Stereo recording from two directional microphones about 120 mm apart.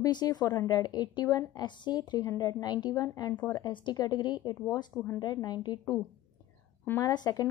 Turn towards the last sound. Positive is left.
turn(degrees=35)  # may be behind; listen again after turning